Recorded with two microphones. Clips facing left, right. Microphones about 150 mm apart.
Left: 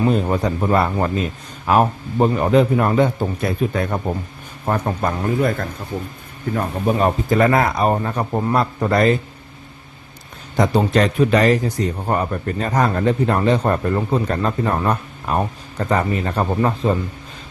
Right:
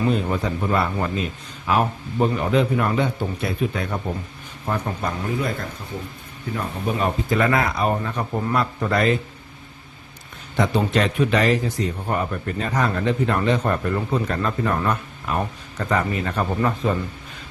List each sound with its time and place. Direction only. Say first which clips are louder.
0.1 s a man's voice: left 4 dB; 45° left (ahead or behind)
10.6 s speech: left 4 dB; 35° left (ahead or behind)